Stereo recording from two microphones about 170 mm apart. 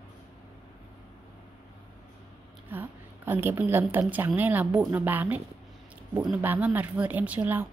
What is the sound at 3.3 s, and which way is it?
Speech, 15° right (ahead or behind).